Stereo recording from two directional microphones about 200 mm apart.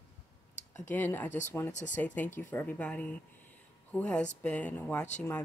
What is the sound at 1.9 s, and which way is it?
Speech, 10° left (ahead or behind).